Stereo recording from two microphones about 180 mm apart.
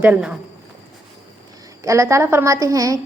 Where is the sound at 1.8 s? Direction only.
15° right (ahead or behind).